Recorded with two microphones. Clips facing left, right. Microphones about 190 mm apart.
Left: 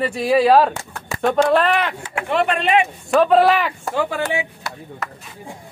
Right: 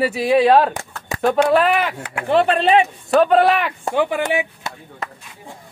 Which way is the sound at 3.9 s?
15° right (ahead or behind).